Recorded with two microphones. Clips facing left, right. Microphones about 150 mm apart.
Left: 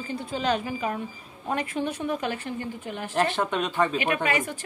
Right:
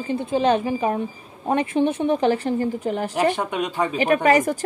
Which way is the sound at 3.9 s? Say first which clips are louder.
Right 8 dB; 40° right (ahead or behind).